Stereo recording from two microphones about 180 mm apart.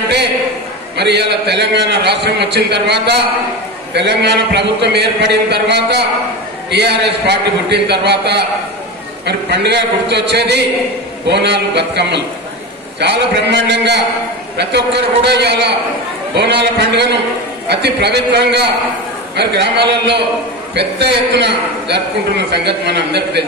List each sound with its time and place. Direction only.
0.9 s a man's voice: 70° right (ahead or behind)